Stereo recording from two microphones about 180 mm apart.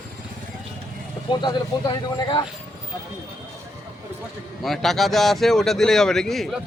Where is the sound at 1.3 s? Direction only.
25° left (ahead or behind).